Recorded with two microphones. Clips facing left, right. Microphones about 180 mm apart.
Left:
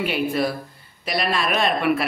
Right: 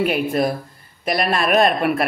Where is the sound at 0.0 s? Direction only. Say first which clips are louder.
Right 3 dB; 45° right (ahead or behind).